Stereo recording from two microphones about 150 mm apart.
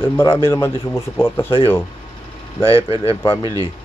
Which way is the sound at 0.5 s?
15° left (ahead or behind).